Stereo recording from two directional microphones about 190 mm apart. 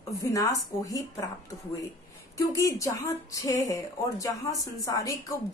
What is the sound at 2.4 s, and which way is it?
A woman's voice, 15° left (ahead or behind).